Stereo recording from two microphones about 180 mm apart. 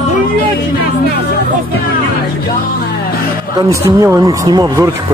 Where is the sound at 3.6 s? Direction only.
15° right (ahead or behind).